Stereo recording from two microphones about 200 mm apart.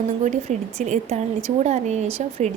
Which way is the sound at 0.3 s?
35° right (ahead or behind).